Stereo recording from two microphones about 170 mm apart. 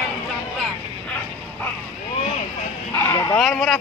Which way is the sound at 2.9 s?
15° left (ahead or behind).